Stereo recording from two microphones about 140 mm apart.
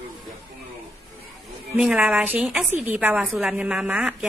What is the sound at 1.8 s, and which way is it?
A woman's voice, 5° right (ahead or behind).